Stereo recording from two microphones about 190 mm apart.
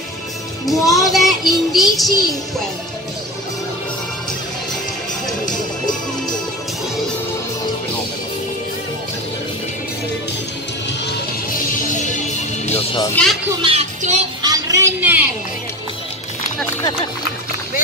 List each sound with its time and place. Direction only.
0.7 s music: centre (ahead or behind)
11.8 s music: 40° left (ahead or behind)
13.1 s speech: 5° left (ahead or behind)
13.6 s music: 30° right (ahead or behind)
14.4 s a sound: 20° right (ahead or behind)